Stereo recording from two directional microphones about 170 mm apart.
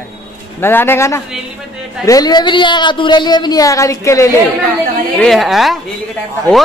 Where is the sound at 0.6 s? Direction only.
15° left (ahead or behind).